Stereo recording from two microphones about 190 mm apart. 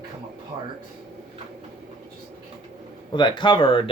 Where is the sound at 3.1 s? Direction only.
25° left (ahead or behind).